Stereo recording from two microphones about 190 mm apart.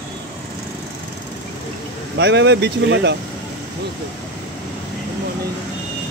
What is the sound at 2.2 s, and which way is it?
Speech, 65° right (ahead or behind).